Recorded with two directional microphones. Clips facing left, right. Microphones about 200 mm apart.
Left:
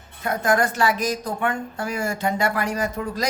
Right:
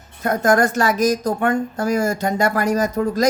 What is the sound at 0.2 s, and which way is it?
Speech, 45° right (ahead or behind).